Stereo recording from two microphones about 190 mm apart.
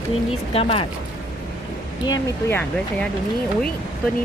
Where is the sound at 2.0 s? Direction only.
15° left (ahead or behind).